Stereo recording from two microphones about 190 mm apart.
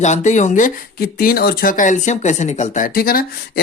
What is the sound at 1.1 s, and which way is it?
Speech, 50° left (ahead or behind).